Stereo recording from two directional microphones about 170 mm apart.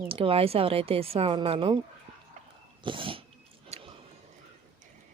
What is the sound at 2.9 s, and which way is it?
Speech, 30° right (ahead or behind).